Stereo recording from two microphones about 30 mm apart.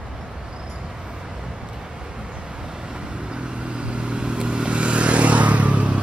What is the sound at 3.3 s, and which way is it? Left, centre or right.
Vehicle, right.